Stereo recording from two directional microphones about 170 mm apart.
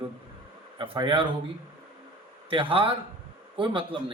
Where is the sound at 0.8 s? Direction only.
30° right (ahead or behind).